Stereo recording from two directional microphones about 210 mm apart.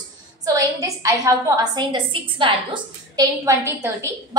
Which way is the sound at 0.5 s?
15° right (ahead or behind).